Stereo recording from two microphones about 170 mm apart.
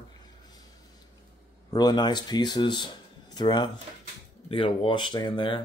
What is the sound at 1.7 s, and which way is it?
Speech, 25° left (ahead or behind).